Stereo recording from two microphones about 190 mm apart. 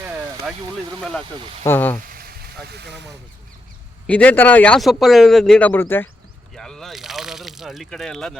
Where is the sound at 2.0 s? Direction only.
50° right (ahead or behind).